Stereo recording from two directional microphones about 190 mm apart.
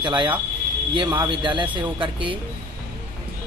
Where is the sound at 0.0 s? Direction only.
25° right (ahead or behind).